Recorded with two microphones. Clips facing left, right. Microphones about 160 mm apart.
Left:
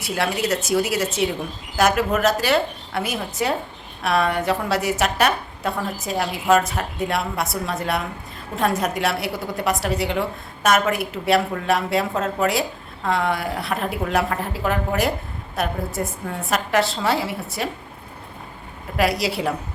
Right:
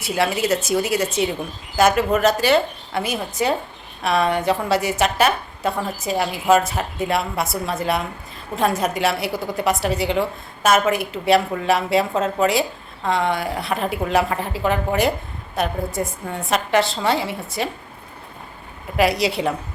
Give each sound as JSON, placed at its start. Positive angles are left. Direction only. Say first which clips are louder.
{"t": 0.0, "sound": "a woman's voice", "louder": "right 2 dB", "side_deg": 0}
{"t": 18.9, "sound": "a woman's voice", "louder": "right 2 dB", "side_deg": 0}